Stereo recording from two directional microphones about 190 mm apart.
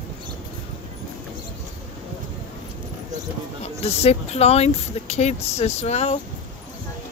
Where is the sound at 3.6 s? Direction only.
30° left (ahead or behind).